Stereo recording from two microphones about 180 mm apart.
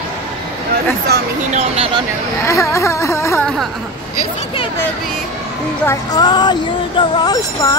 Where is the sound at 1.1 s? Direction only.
65° right (ahead or behind).